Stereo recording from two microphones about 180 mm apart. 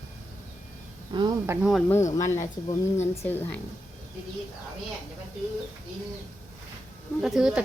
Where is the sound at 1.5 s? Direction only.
5° right (ahead or behind).